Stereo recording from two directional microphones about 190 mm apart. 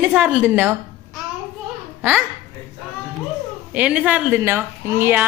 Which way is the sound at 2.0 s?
10° right (ahead or behind).